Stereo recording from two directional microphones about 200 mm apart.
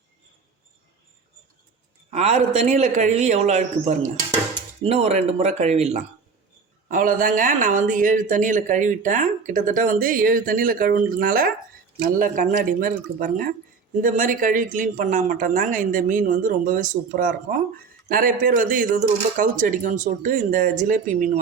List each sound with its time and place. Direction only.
2.0 s speech: 35° right (ahead or behind)